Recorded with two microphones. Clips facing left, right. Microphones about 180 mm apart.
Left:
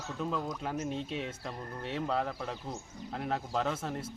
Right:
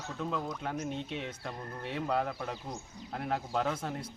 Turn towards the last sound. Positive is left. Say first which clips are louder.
# even
turn(degrees=0)  # may be behind; listen again after turning